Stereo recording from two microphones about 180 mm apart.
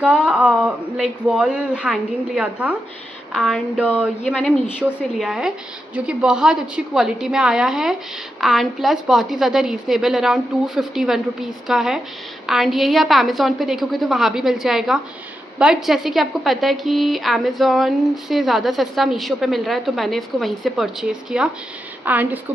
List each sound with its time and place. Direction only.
0.0 s a woman's voice: 5° right (ahead or behind)